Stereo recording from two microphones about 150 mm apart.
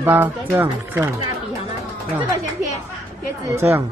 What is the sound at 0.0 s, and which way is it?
Speech, 10° right (ahead or behind).